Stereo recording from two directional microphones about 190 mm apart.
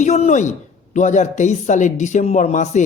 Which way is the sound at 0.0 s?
40° left (ahead or behind).